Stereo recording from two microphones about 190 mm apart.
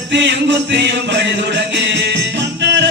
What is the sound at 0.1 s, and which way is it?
Music, 70° right (ahead or behind).